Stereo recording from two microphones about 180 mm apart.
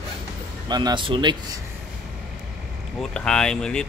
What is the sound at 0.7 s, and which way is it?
Speech, 25° right (ahead or behind).